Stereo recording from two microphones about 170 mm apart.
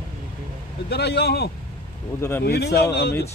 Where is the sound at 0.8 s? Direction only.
75° left (ahead or behind).